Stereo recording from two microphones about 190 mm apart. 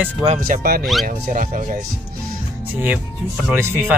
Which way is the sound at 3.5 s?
15° right (ahead or behind).